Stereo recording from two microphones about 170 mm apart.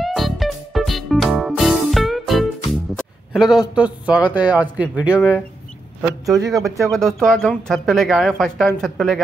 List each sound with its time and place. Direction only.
0.0 s music: centre (ahead or behind)
3.0 s a man's voice: 5° right (ahead or behind)
6.3 s speech: 20° right (ahead or behind)
6.8 s speech: centre (ahead or behind)